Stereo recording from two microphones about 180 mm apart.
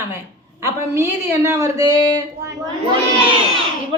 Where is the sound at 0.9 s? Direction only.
15° right (ahead or behind).